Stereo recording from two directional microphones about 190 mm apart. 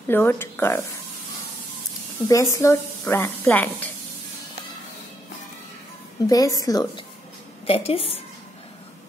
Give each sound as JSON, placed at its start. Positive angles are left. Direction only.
{"t": 0.1, "sound": "a woman's voice", "side_deg": 10}
{"t": 2.2, "sound": "a woman's voice", "side_deg": 15}
{"t": 6.2, "sound": "a woman's voice", "side_deg": 20}